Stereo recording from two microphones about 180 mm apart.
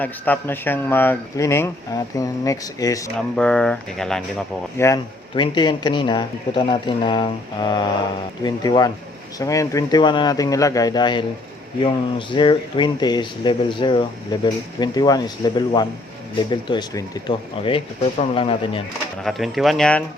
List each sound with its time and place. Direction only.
0.0 s speech: 10° left (ahead or behind)
3.2 s speech: 5° left (ahead or behind)
4.8 s speech: 15° left (ahead or behind)
5.3 s speech: 25° left (ahead or behind)
19.2 s speech: centre (ahead or behind)